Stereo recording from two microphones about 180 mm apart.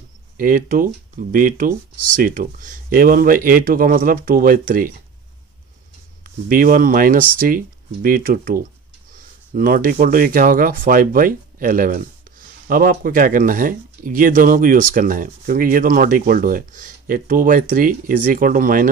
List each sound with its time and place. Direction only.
0.4 s speech: 50° right (ahead or behind)
6.2 s speech: 50° right (ahead or behind)